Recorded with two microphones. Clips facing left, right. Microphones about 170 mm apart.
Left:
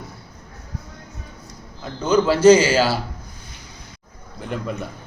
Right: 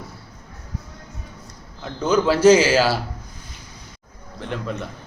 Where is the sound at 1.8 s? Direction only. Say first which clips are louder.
Left 1 dB; 5° right (ahead or behind).